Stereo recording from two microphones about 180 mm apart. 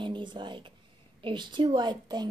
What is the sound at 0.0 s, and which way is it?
A woman's voice, 25° right (ahead or behind).